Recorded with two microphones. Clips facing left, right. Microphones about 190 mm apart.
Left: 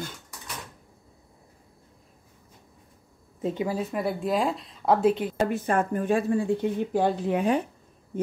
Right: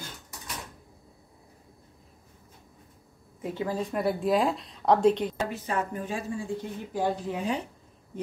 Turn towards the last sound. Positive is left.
turn(degrees=60)  # may be behind; listen again after turning